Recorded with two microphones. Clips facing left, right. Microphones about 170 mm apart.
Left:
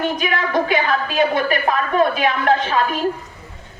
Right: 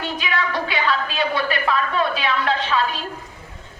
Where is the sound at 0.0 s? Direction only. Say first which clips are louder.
Left 4 dB; 45° left (ahead or behind).